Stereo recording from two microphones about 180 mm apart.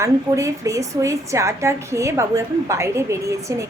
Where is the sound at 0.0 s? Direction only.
15° right (ahead or behind).